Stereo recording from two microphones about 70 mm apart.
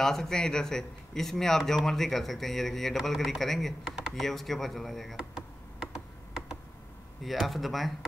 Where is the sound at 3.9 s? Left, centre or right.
Centre.